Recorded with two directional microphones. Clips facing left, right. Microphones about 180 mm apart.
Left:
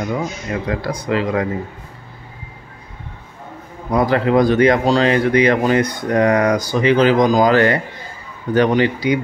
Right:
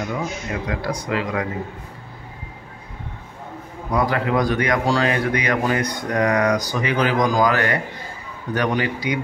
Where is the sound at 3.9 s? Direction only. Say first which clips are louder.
Left 6 dB; 30° left (ahead or behind).